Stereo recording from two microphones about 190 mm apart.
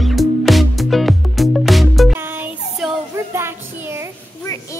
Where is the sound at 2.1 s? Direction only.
10° right (ahead or behind).